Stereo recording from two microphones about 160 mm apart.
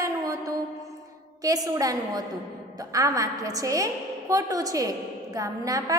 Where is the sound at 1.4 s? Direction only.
20° right (ahead or behind).